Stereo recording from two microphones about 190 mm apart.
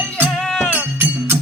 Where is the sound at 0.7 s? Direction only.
10° right (ahead or behind).